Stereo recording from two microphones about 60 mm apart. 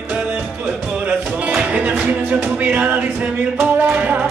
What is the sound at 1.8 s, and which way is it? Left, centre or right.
Music, right.